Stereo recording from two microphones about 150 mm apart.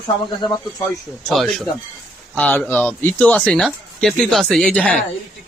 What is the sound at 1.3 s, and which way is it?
Speech, centre (ahead or behind).